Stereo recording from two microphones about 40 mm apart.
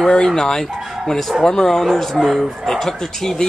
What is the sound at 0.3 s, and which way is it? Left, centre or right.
Speech, centre.